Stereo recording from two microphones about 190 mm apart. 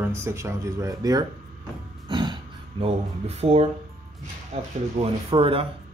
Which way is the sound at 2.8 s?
30° right (ahead or behind).